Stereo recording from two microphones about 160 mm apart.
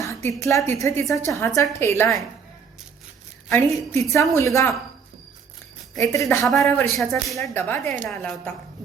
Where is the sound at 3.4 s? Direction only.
15° left (ahead or behind).